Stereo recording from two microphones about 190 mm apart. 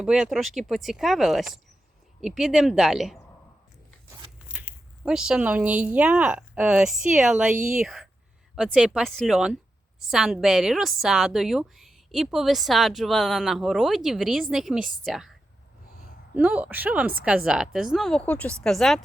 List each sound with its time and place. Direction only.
0.0 s a woman's voice: 5° right (ahead or behind)
4.4 s a woman's voice: 5° right (ahead or behind)
7.5 s speech: 45° right (ahead or behind)
7.8 s a woman's voice: centre (ahead or behind)
16.3 s a woman's voice: 10° right (ahead or behind)